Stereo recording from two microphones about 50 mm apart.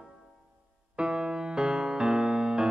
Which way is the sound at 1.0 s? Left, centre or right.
Centre.